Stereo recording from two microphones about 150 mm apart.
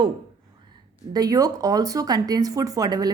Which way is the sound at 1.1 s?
25° right (ahead or behind).